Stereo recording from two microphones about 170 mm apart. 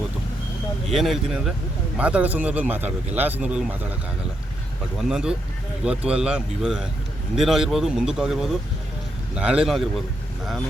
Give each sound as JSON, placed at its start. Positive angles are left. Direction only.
{"t": 0.9, "sound": "speech", "side_deg": 0}
{"t": 4.9, "sound": "speech", "side_deg": -5}